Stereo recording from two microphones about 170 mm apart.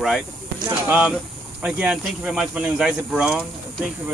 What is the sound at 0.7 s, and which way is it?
Speech, 10° right (ahead or behind).